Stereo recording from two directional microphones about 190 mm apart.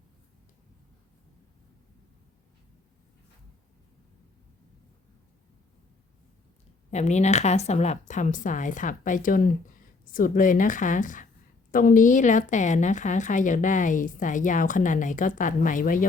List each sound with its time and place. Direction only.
6.9 s a woman's voice: 35° left (ahead or behind)